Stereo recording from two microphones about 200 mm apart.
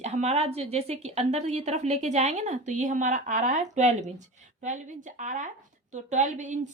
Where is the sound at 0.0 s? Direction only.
35° right (ahead or behind).